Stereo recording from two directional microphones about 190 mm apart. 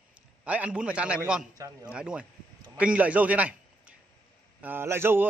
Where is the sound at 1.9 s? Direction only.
5° right (ahead or behind).